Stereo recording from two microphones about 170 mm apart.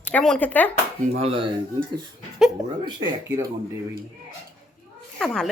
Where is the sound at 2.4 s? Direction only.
5° right (ahead or behind).